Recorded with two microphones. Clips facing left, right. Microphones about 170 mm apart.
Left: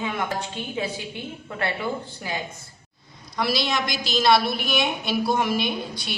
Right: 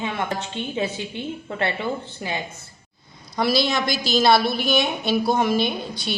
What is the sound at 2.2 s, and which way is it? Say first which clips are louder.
Speech: right 3 dB; 20° right (ahead or behind).